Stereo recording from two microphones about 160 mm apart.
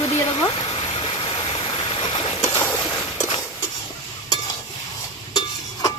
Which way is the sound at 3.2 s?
40° left (ahead or behind).